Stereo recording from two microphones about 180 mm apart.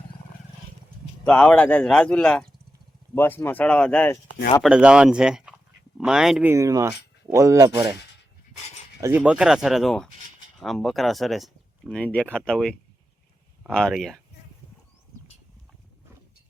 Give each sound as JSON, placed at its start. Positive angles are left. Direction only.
{"t": 1.2, "sound": "speech", "side_deg": 5}
{"t": 4.6, "sound": "speech", "side_deg": -5}
{"t": 6.5, "sound": "speech", "side_deg": -20}
{"t": 9.0, "sound": "speech", "side_deg": -15}